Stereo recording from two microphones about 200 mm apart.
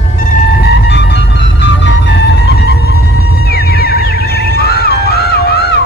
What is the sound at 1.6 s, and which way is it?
Music, 60° left (ahead or behind).